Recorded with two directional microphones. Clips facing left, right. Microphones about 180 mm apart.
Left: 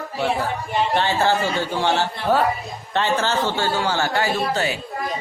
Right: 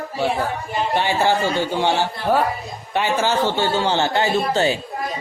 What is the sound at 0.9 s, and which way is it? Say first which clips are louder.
A man's voice: right 2 dB; 15° right (ahead or behind).